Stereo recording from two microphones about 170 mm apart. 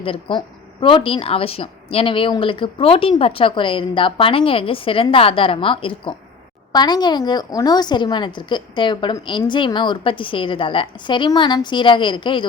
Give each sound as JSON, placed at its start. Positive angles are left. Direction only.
{"t": 0.0, "sound": "a woman's voice", "side_deg": 30}